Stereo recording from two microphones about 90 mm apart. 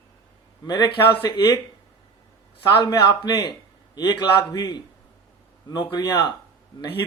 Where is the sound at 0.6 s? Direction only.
55° left (ahead or behind).